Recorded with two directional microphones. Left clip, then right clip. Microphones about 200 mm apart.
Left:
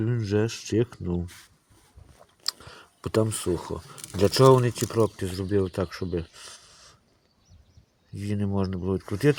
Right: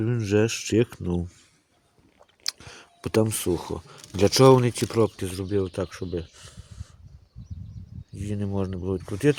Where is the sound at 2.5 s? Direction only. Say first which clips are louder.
Even; 25° right (ahead or behind); by 6.9 s 5° left (ahead or behind).